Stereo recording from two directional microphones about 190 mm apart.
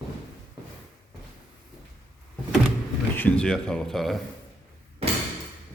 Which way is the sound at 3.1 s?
5° left (ahead or behind).